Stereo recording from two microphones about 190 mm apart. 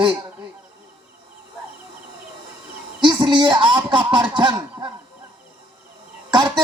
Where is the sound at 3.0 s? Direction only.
25° right (ahead or behind).